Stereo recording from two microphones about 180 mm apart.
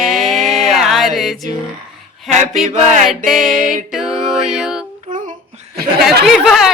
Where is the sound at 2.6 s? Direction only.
40° right (ahead or behind).